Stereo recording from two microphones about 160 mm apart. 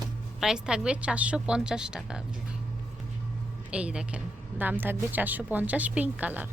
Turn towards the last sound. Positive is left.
turn(degrees=-10)  # may be behind; listen again after turning